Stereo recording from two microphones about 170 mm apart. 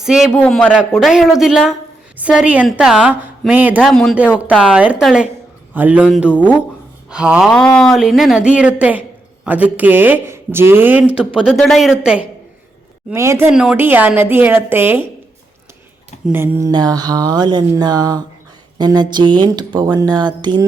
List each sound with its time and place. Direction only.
0.0 s a woman's voice: 5° right (ahead or behind)
3.8 s a woman's voice: 5° left (ahead or behind)
11.3 s speech: centre (ahead or behind)
13.1 s a woman's voice: 15° right (ahead or behind)
16.2 s speech: 10° right (ahead or behind)